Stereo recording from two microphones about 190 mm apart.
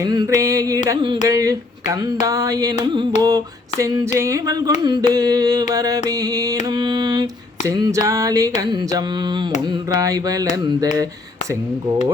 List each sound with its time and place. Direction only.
0.0 s carnatic music: 20° right (ahead or behind)
0.3 s music: 15° right (ahead or behind)
0.9 s carnatic music: 25° right (ahead or behind)
1.3 s speech: 20° right (ahead or behind)
2.2 s music: 20° right (ahead or behind)
2.8 s carnatic music: 25° right (ahead or behind)
4.2 s music: 15° right (ahead or behind)
4.8 s carnatic music: 20° right (ahead or behind)
7.7 s music: 15° right (ahead or behind)
8.7 s carnatic music: 20° right (ahead or behind)
10.0 s music: 20° right (ahead or behind)
10.5 s carnatic music: 20° right (ahead or behind)